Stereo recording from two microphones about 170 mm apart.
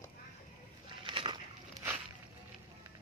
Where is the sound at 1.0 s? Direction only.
30° right (ahead or behind).